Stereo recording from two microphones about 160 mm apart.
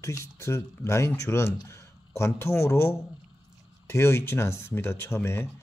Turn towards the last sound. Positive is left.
turn(degrees=15)  # may be behind; listen again after turning